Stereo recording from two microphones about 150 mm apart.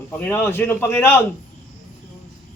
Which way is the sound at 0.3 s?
15° left (ahead or behind).